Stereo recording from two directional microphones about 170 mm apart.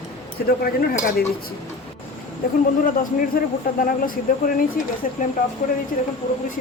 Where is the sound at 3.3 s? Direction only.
55° left (ahead or behind).